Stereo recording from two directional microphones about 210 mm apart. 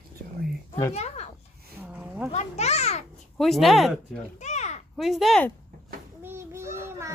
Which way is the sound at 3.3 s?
Centre (ahead or behind).